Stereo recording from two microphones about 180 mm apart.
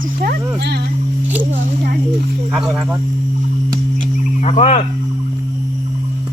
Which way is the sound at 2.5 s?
5° right (ahead or behind).